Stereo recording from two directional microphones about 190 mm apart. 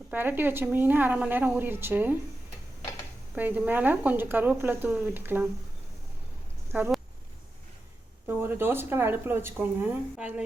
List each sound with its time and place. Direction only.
0.1 s a woman's voice: 10° right (ahead or behind)
3.3 s a woman's voice: 10° right (ahead or behind)
6.7 s speech: 10° right (ahead or behind)
8.4 s a woman's voice: 10° right (ahead or behind)